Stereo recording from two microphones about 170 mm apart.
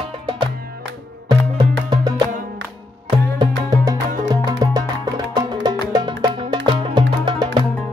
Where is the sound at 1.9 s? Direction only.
25° right (ahead or behind).